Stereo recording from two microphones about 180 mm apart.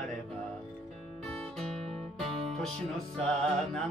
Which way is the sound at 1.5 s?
Centre (ahead or behind).